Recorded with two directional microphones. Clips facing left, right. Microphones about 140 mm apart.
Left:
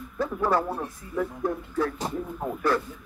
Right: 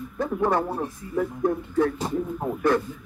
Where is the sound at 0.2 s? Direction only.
20° right (ahead or behind).